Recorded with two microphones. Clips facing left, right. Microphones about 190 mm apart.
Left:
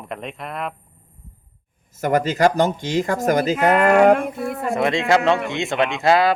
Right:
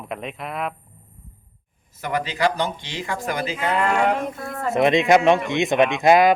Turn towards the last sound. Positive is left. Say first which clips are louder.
# right 2 dB
turn(degrees=-15)  # may be behind; listen again after turning